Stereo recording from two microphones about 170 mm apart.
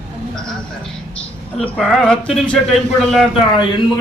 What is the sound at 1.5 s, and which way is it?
A man's voice, 5° left (ahead or behind).